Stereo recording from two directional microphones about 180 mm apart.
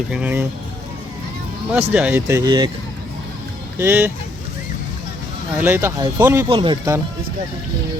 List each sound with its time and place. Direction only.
0.1 s speech: 10° right (ahead or behind)
1.9 s speech: 5° right (ahead or behind)
2.2 s speech: 20° right (ahead or behind)
3.8 s speech: 15° right (ahead or behind)
5.5 s speech: 15° right (ahead or behind)